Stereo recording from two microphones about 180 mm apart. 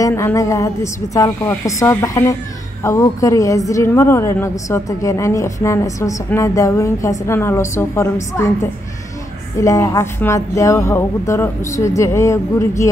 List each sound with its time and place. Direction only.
0.0 s speech: 15° left (ahead or behind)
9.6 s speech: 20° left (ahead or behind)